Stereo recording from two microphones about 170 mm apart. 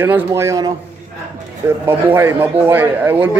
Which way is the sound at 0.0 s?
15° right (ahead or behind).